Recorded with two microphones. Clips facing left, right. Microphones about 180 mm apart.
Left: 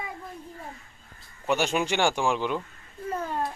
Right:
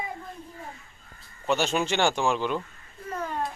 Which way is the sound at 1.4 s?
10° left (ahead or behind).